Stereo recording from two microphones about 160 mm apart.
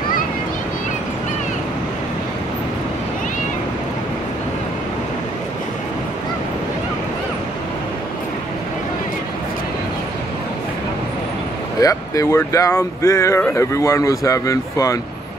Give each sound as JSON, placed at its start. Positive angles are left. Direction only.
{"t": 11.8, "sound": "speech", "side_deg": 20}